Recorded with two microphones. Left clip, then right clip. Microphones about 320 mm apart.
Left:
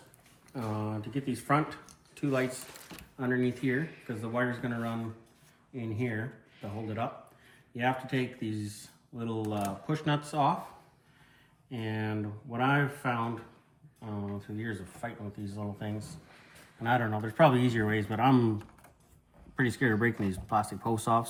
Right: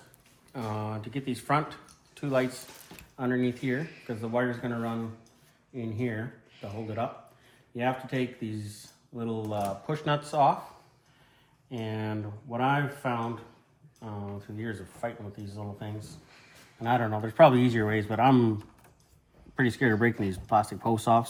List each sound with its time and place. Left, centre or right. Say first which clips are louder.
0.5 s speech: right 1 dB; centre
3.8 s speech: right 3 dB; centre
11.7 s speech: right 1 dB; centre
16.8 s speech: right 2 dB; centre
19.5 s speech: right 3 dB; centre